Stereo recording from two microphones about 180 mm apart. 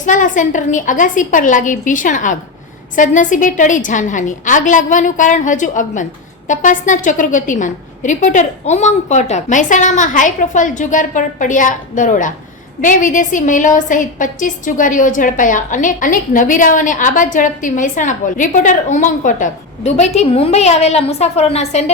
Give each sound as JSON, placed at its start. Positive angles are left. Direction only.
{"t": 0.0, "sound": "a woman's voice", "side_deg": 45}